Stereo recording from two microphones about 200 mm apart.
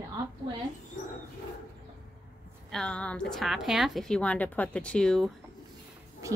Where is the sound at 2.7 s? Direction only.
5° left (ahead or behind).